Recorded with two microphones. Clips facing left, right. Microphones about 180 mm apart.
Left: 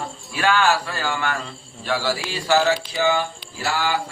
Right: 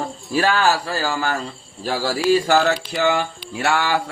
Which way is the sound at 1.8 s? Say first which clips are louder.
Right 6 dB; 45° right (ahead or behind).